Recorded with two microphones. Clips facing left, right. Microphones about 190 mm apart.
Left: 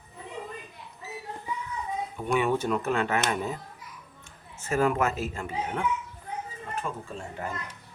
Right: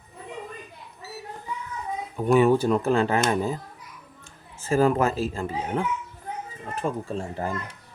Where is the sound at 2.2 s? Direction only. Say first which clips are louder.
Right 8 dB; 35° right (ahead or behind).